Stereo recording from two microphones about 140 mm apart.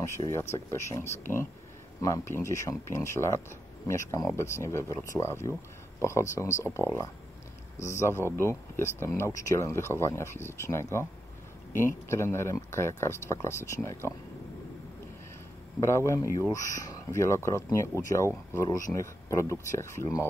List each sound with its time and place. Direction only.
0.0 s speech: 20° left (ahead or behind)
12.1 s speech: 20° left (ahead or behind)
15.8 s speech: 20° left (ahead or behind)